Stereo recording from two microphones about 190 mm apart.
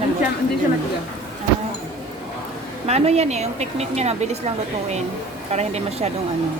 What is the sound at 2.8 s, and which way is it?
A woman's voice, 35° right (ahead or behind).